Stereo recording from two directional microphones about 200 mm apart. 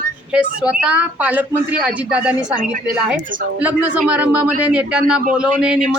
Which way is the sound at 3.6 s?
5° right (ahead or behind).